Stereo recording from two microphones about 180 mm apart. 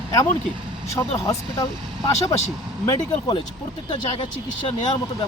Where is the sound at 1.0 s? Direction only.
20° left (ahead or behind).